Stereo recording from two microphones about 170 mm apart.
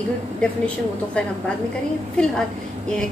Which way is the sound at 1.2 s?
5° left (ahead or behind).